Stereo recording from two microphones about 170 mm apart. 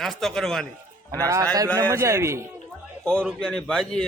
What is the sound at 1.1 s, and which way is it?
A man's voice, 20° right (ahead or behind).